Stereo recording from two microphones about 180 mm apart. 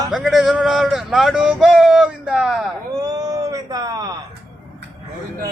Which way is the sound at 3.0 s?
20° right (ahead or behind).